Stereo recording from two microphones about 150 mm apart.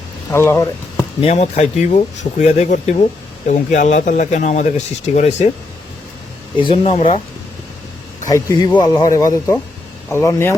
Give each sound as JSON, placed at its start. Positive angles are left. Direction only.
{"t": 0.3, "sound": "speech", "side_deg": 15}
{"t": 1.2, "sound": "speech", "side_deg": 45}
{"t": 6.6, "sound": "speech", "side_deg": 40}
{"t": 8.3, "sound": "speech", "side_deg": 25}